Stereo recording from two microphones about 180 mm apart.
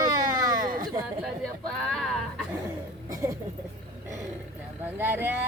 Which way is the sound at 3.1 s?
15° right (ahead or behind).